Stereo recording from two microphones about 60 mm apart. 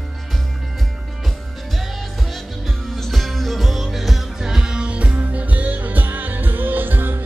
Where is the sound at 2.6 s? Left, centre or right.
Centre.